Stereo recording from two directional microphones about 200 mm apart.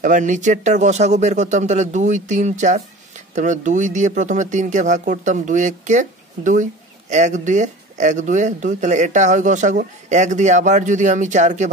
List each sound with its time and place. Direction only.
0.0 s speech: 40° right (ahead or behind)